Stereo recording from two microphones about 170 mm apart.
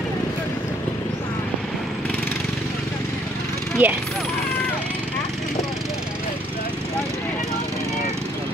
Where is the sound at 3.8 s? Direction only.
10° right (ahead or behind).